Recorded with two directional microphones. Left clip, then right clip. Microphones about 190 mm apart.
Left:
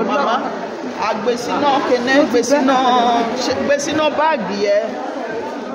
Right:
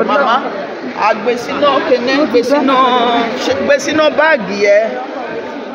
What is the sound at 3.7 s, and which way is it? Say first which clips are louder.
Speech: right 6 dB; 5° right (ahead or behind).